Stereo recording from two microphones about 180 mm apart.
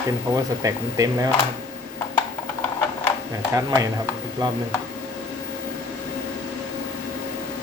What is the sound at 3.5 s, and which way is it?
Speech, 20° right (ahead or behind).